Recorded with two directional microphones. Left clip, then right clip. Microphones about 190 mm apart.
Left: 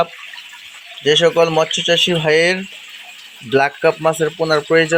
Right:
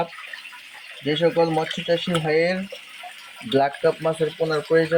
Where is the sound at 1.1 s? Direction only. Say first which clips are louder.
Left 7 dB; 10° left (ahead or behind).